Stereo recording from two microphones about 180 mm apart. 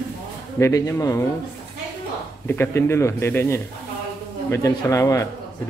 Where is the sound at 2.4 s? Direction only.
10° left (ahead or behind).